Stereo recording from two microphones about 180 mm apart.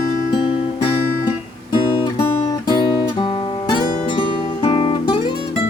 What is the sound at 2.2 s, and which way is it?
Guitar, 25° left (ahead or behind).